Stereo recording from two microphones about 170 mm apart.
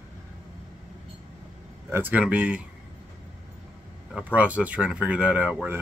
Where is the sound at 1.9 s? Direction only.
10° right (ahead or behind).